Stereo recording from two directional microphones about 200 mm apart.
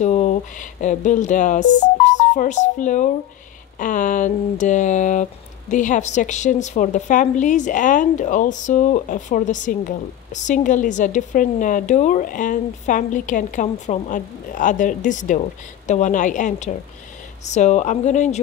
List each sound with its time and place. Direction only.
0.0 s speech: 35° left (ahead or behind)